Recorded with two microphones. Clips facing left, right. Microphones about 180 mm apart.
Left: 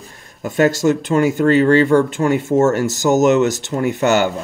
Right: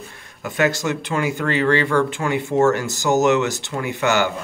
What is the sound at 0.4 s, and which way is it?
Speech, 40° left (ahead or behind).